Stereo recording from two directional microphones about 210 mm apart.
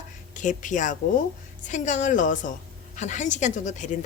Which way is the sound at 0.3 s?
35° left (ahead or behind).